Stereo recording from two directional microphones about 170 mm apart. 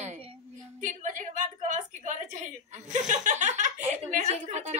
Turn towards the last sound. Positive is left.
turn(degrees=-40)  # may be behind; listen again after turning